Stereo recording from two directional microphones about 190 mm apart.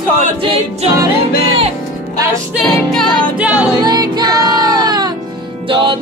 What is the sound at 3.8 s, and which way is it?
Music, 20° right (ahead or behind).